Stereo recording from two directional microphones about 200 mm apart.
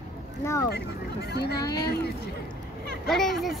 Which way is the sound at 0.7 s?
55° left (ahead or behind).